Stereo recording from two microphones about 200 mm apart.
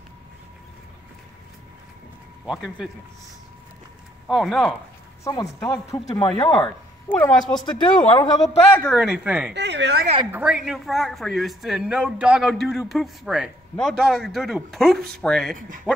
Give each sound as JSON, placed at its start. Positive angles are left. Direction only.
{"t": 2.4, "sound": "speech", "side_deg": 0}
{"t": 4.3, "sound": "speech", "side_deg": 0}
{"t": 5.2, "sound": "speech", "side_deg": 15}
{"t": 7.1, "sound": "speech", "side_deg": 5}
{"t": 8.2, "sound": "speech", "side_deg": 20}
{"t": 8.7, "sound": "speech", "side_deg": 0}
{"t": 9.5, "sound": "a woman's voice", "side_deg": -60}
{"t": 10.3, "sound": "speech", "side_deg": -5}